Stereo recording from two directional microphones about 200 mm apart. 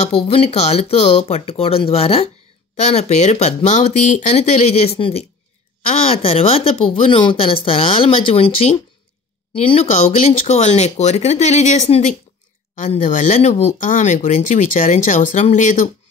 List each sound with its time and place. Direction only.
0.0 s speech: 30° left (ahead or behind)